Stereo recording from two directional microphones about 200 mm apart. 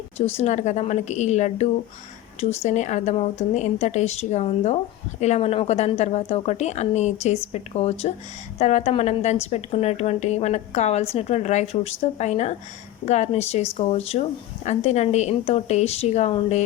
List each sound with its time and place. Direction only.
0.2 s a woman's voice: 30° left (ahead or behind)